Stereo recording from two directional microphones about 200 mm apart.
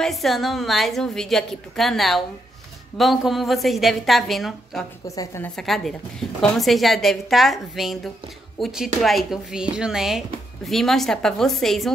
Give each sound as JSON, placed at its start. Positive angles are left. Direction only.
{"t": 0.0, "sound": "speech", "side_deg": 0}
{"t": 5.0, "sound": "a woman's voice", "side_deg": 15}
{"t": 5.6, "sound": "speech", "side_deg": 0}